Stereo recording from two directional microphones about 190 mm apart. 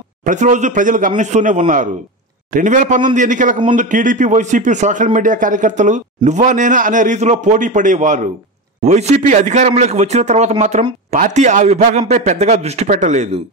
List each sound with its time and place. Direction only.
0.2 s a man's voice: 40° right (ahead or behind)